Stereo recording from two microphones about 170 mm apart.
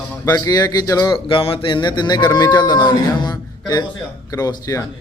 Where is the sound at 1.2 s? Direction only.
30° left (ahead or behind).